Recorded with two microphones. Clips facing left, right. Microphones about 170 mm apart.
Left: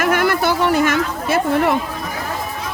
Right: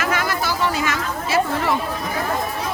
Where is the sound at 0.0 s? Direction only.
55° left (ahead or behind).